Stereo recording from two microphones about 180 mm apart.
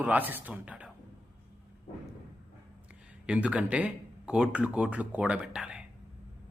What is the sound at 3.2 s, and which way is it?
A man's voice, 5° right (ahead or behind).